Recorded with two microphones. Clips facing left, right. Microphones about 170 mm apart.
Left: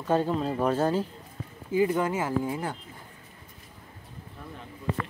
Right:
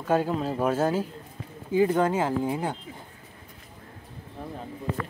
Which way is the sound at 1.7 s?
25° right (ahead or behind).